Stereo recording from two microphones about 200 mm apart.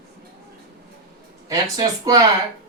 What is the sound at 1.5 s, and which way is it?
Speech, 15° right (ahead or behind).